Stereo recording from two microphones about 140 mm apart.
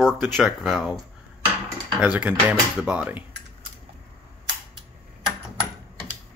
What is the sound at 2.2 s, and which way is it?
Speech, 10° right (ahead or behind).